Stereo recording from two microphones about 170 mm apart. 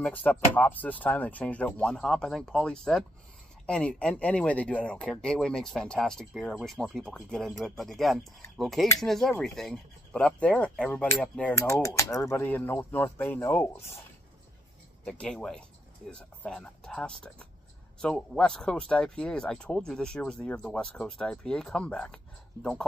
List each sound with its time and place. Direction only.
0.0 s speech: 10° left (ahead or behind)
11.8 s speech: 20° left (ahead or behind)
15.0 s speech: 5° left (ahead or behind)